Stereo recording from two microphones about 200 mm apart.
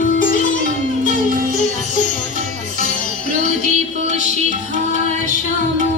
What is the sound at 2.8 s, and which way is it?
Music, 40° right (ahead or behind).